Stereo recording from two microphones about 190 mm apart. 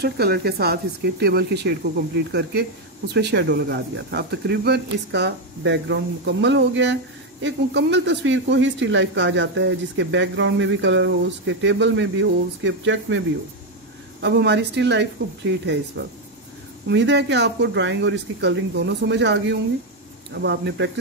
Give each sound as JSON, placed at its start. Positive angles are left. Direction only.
{"t": 0.0, "sound": "speech", "side_deg": -55}
{"t": 14.2, "sound": "speech", "side_deg": -60}
{"t": 16.8, "sound": "speech", "side_deg": -65}